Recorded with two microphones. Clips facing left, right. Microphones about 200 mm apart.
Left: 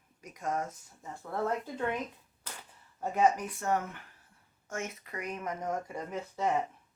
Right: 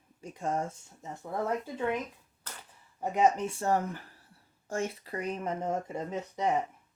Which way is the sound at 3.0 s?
20° right (ahead or behind).